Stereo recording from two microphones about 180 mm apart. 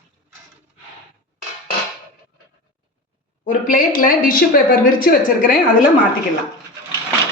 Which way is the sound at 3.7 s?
50° left (ahead or behind).